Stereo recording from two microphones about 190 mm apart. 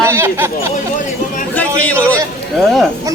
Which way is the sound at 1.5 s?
10° left (ahead or behind).